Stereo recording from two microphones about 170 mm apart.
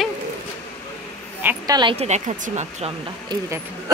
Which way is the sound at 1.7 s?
30° right (ahead or behind).